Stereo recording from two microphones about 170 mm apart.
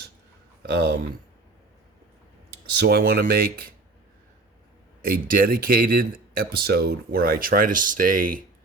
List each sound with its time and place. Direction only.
0.6 s speech: 70° right (ahead or behind)
2.7 s speech: 70° right (ahead or behind)
5.0 s speech: 60° right (ahead or behind)